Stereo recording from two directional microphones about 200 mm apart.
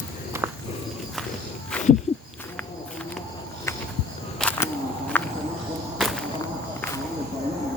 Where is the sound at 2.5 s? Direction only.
5° left (ahead or behind).